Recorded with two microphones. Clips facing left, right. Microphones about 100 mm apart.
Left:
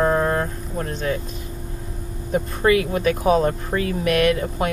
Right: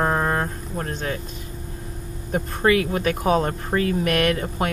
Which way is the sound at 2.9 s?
35° right (ahead or behind).